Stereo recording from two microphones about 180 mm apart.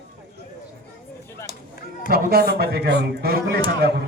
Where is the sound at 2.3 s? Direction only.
60° right (ahead or behind).